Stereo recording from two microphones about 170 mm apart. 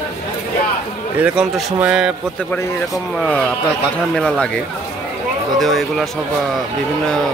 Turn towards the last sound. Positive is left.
turn(degrees=0)  # may be behind; listen again after turning